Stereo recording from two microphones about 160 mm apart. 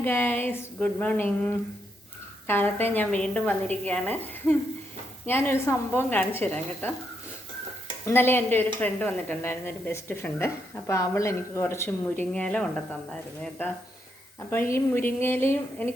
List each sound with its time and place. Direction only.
0.0 s a woman's voice: 15° left (ahead or behind)
8.0 s a woman's voice: 15° left (ahead or behind)
14.5 s a woman's voice: 15° left (ahead or behind)